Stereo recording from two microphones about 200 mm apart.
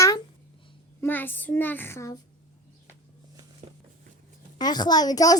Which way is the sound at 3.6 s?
35° right (ahead or behind).